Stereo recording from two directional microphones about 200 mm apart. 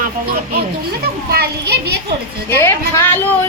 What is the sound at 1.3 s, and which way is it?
Speech, 55° right (ahead or behind).